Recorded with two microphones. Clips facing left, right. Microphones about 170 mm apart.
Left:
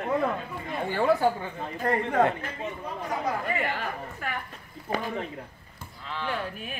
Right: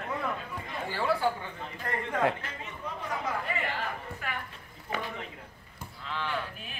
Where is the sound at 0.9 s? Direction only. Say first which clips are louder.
Left 6 dB; 50° left (ahead or behind).